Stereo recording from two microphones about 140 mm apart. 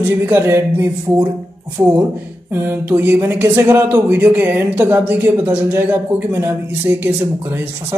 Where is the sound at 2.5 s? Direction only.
15° right (ahead or behind).